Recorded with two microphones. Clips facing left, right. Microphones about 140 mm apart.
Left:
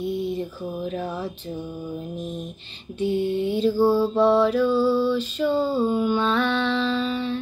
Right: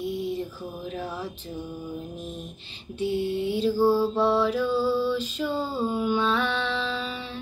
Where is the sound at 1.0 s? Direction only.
15° left (ahead or behind).